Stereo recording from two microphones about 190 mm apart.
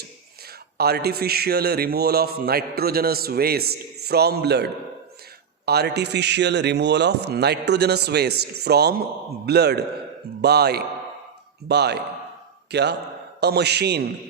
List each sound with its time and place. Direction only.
0.8 s a man's voice: 55° right (ahead or behind)